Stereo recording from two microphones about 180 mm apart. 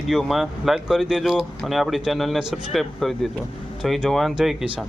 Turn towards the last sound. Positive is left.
turn(degrees=-5)  # may be behind; listen again after turning